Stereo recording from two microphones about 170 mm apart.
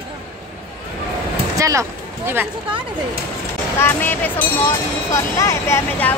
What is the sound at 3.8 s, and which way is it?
Speech, 10° left (ahead or behind).